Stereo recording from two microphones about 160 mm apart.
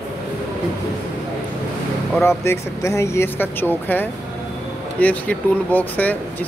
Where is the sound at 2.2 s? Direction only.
15° left (ahead or behind).